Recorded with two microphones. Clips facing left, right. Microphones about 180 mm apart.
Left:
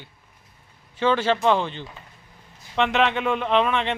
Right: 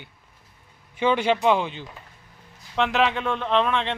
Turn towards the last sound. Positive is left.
turn(degrees=5)  # may be behind; listen again after turning